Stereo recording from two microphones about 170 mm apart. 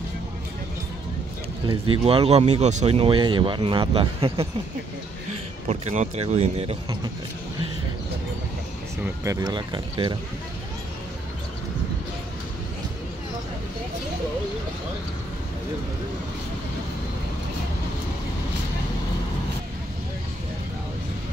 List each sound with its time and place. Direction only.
1.7 s speech: 30° right (ahead or behind)
5.7 s speech: 40° right (ahead or behind)
9.2 s speech: 20° right (ahead or behind)